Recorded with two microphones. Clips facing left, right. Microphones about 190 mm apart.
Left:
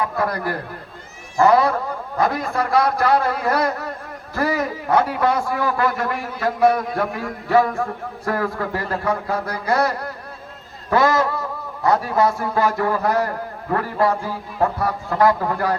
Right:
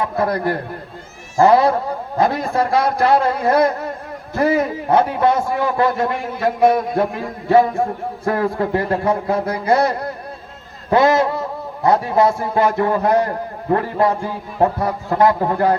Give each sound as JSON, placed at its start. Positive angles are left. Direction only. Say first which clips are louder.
{"t": 0.2, "sound": "a man's voice", "louder": "right 4 dB", "side_deg": -25}
{"t": 10.8, "sound": "a sound", "louder": "right 3 dB", "side_deg": -25}
{"t": 11.8, "sound": "a man's voice", "louder": "right 3 dB", "side_deg": -25}